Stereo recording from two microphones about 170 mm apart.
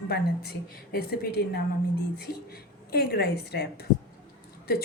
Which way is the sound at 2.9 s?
70° left (ahead or behind).